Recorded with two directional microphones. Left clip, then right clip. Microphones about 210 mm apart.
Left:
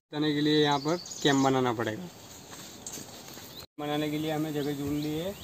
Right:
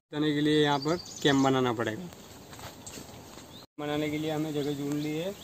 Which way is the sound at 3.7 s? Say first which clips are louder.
Even; 15° right (ahead or behind).